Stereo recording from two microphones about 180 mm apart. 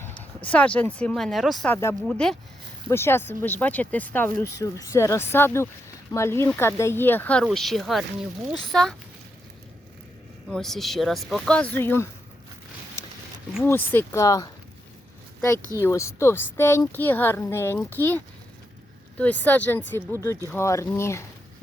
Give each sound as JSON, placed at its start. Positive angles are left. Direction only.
{"t": 0.4, "sound": "a woman's voice", "side_deg": 5}
{"t": 1.7, "sound": "a woman's voice", "side_deg": 15}
{"t": 2.0, "sound": "a woman's voice", "side_deg": 5}
{"t": 10.5, "sound": "speech", "side_deg": 0}
{"t": 13.6, "sound": "a woman's voice", "side_deg": 10}
{"t": 15.8, "sound": "a woman's voice", "side_deg": 15}